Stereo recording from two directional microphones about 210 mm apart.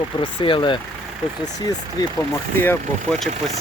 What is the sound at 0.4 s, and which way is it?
Speech, 25° left (ahead or behind).